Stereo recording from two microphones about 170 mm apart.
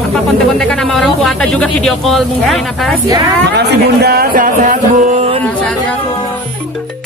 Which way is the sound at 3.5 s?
75° right (ahead or behind).